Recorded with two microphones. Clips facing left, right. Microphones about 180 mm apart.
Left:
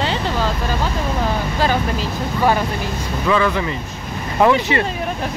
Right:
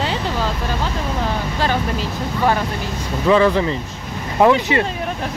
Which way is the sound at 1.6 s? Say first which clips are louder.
Left 1 dB; 5° left (ahead or behind).